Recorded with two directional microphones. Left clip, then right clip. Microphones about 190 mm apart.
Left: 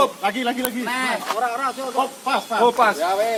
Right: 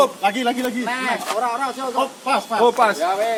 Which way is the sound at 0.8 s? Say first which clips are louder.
Left 3 dB; 55° left (ahead or behind).